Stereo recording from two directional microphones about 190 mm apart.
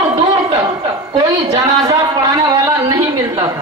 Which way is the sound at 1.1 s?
20° right (ahead or behind).